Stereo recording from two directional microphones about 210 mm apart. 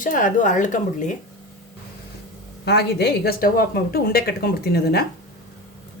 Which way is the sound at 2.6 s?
50° left (ahead or behind).